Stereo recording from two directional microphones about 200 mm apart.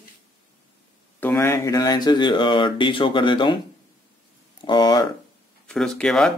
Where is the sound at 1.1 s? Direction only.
10° left (ahead or behind).